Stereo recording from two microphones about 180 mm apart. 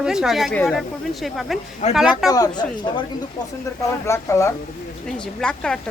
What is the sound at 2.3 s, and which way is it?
Speech, 20° left (ahead or behind).